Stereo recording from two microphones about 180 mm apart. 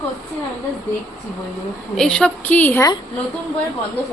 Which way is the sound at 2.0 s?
5° left (ahead or behind).